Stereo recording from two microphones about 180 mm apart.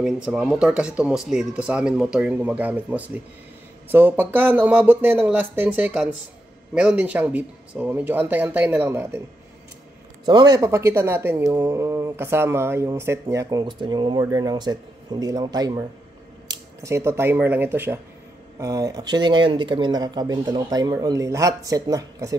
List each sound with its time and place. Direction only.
0.0 s speech: 5° right (ahead or behind)
10.2 s speech: 25° right (ahead or behind)